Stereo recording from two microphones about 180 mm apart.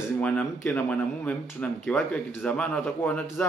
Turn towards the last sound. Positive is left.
turn(degrees=5)  # may be behind; listen again after turning